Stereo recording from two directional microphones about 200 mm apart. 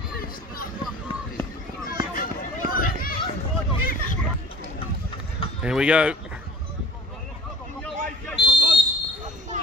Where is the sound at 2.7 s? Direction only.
45° left (ahead or behind).